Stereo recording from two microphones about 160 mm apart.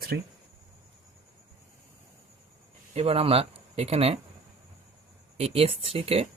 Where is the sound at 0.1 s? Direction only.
90° right.